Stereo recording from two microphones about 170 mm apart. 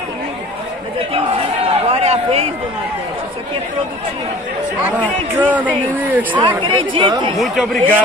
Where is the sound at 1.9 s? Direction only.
35° right (ahead or behind).